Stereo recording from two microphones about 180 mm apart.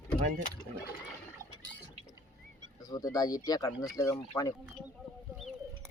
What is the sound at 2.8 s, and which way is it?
Speech, 20° left (ahead or behind).